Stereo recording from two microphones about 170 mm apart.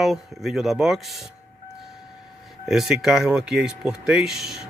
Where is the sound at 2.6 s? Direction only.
5° right (ahead or behind).